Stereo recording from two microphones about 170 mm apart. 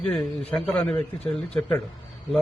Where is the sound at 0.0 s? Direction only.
5° left (ahead or behind).